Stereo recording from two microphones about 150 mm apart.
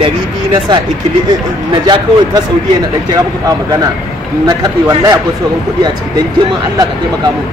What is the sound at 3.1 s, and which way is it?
Speech, 25° right (ahead or behind).